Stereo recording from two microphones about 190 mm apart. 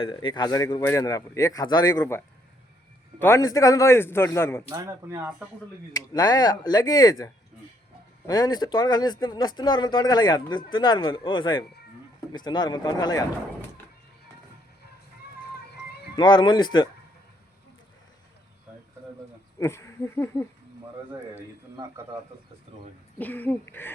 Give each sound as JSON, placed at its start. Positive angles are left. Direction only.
{"t": 0.1, "sound": "a man's voice", "side_deg": 25}
{"t": 4.7, "sound": "speech", "side_deg": -15}
{"t": 5.9, "sound": "speech", "side_deg": 20}
{"t": 8.3, "sound": "speech", "side_deg": 20}
{"t": 16.1, "sound": "speech", "side_deg": 25}
{"t": 19.5, "sound": "speech", "side_deg": 15}
{"t": 23.1, "sound": "a man's voice", "side_deg": 10}